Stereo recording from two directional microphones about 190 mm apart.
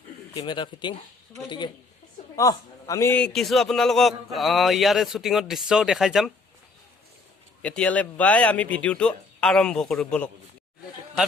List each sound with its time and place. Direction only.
0.3 s a man's voice: 25° left (ahead or behind); by 6.3 s centre (ahead or behind)
7.6 s speech: 5° left (ahead or behind)